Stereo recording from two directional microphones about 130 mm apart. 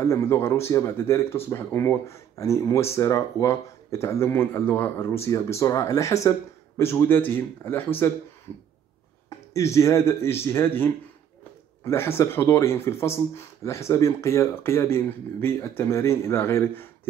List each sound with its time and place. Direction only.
0.0 s speech: 20° left (ahead or behind)
9.8 s speech: 20° left (ahead or behind)